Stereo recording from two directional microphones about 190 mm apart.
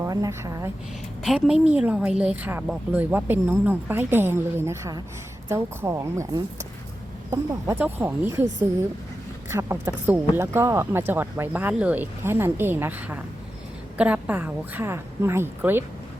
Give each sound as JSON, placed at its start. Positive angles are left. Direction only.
{"t": 0.0, "sound": "speech", "side_deg": -15}
{"t": 1.2, "sound": "a woman's voice", "side_deg": -5}
{"t": 9.5, "sound": "speech", "side_deg": -15}